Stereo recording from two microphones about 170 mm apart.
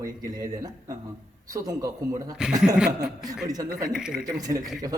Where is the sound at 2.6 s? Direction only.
5° right (ahead or behind).